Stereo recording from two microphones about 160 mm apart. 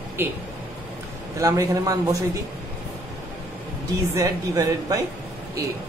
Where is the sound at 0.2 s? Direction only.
15° right (ahead or behind).